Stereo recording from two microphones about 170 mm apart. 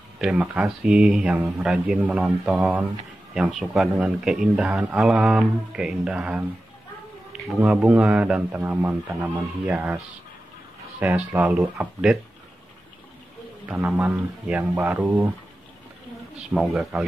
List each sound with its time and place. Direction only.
0.2 s a man's voice: 5° right (ahead or behind)
7.4 s speech: 5° right (ahead or behind)
11.0 s speech: 10° right (ahead or behind)
13.7 s speech: 10° right (ahead or behind)
16.5 s a man's voice: centre (ahead or behind)